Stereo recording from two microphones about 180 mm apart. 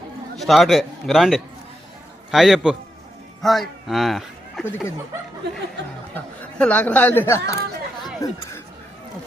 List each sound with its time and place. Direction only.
0.3 s a man's voice: centre (ahead or behind)
6.1 s speech: 10° left (ahead or behind)